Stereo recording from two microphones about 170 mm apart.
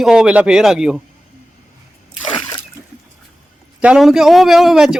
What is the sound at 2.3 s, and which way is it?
Splash, 30° left (ahead or behind).